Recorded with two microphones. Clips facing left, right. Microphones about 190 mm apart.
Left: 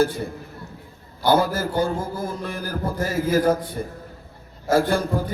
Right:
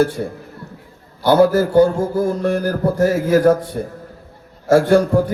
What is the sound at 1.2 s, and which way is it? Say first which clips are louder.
Speech: right 7 dB; 70° right (ahead or behind).